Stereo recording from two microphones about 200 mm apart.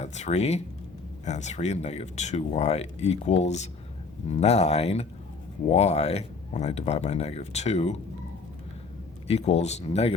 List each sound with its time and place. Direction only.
0.0 s speech: 35° left (ahead or behind)
9.2 s speech: 30° left (ahead or behind)